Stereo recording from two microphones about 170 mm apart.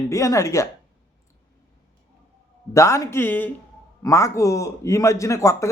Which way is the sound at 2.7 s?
15° left (ahead or behind).